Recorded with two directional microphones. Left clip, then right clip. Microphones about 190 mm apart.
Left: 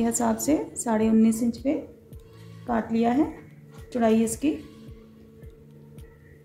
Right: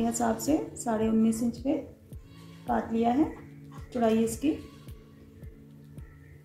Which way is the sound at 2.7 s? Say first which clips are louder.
Left 2 dB; 50° left (ahead or behind).